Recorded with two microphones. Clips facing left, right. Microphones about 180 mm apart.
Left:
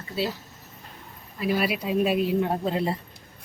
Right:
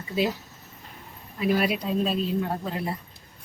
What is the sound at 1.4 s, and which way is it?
Speech, centre (ahead or behind).